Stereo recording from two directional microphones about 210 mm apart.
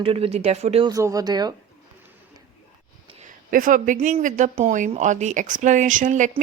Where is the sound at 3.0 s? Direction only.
35° right (ahead or behind).